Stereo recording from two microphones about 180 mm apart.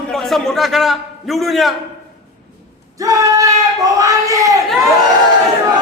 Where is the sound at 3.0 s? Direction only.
20° right (ahead or behind).